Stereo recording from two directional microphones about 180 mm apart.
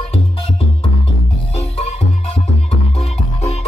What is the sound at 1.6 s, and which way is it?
Music, 35° left (ahead or behind).